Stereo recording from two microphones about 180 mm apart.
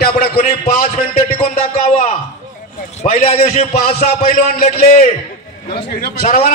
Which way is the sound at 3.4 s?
50° left (ahead or behind).